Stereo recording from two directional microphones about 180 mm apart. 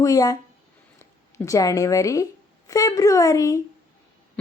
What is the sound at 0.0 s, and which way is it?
Speech, 20° left (ahead or behind).